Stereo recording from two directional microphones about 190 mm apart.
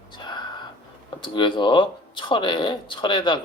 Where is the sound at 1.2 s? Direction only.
25° left (ahead or behind).